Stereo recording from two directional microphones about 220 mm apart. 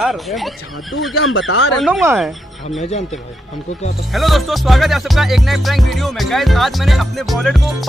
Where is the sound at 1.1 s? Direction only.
70° left (ahead or behind).